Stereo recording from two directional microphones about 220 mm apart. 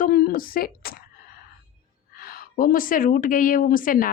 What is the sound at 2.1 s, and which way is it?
A woman's voice, 40° left (ahead or behind).